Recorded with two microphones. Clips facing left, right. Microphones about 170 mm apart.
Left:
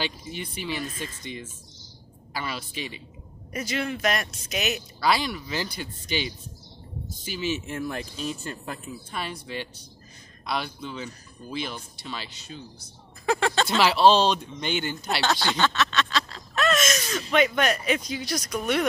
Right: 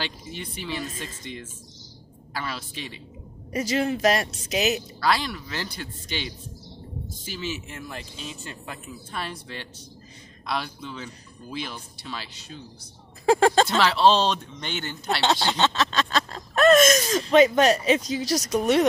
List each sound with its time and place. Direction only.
0.0 s speech: 5° left (ahead or behind)
3.6 s speech: 35° right (ahead or behind)
5.0 s speech: 5° left (ahead or behind)
7.6 s speech: 45° left (ahead or behind)
9.1 s speech: centre (ahead or behind)
13.2 s a sound: 35° right (ahead or behind)
13.7 s speech: 5° left (ahead or behind)
15.2 s speech: 25° right (ahead or behind); by 17.1 s 50° right (ahead or behind)
17.1 s speech: 30° right (ahead or behind)